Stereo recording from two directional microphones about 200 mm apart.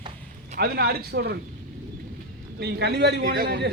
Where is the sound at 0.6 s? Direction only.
50° right (ahead or behind).